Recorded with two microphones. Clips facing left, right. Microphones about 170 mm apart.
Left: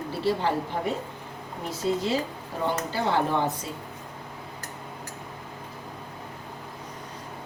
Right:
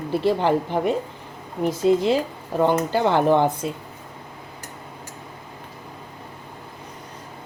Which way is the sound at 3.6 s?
65° right (ahead or behind).